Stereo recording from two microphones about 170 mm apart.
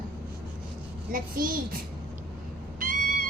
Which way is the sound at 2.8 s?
55° right (ahead or behind).